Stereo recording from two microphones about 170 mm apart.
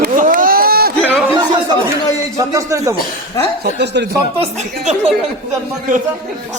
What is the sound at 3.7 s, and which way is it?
Speech, 90° right.